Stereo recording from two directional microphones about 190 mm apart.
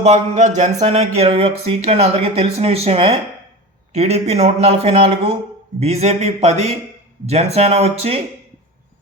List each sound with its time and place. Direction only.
0.0 s speech: 35° right (ahead or behind)